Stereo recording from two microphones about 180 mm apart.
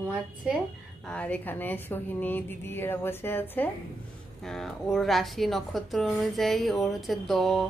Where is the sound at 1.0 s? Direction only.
5° left (ahead or behind).